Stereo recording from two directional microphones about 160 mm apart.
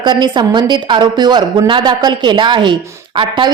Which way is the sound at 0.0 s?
30° right (ahead or behind).